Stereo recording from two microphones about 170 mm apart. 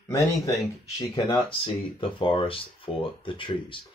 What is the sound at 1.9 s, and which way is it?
Speech, 30° left (ahead or behind).